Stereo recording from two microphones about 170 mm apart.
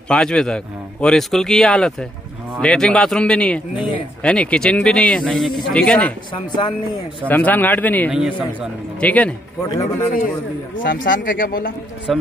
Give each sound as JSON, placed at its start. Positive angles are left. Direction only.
{"t": 0.1, "sound": "a man's voice", "side_deg": 5}
{"t": 6.3, "sound": "speech", "side_deg": 30}
{"t": 7.2, "sound": "a man's voice", "side_deg": 10}
{"t": 8.1, "sound": "speech", "side_deg": -5}
{"t": 9.0, "sound": "a man's voice", "side_deg": 10}
{"t": 11.1, "sound": "speech", "side_deg": 55}
{"t": 12.1, "sound": "speech", "side_deg": 0}